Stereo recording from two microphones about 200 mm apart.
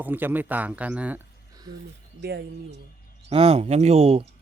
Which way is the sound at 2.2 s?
55° right (ahead or behind).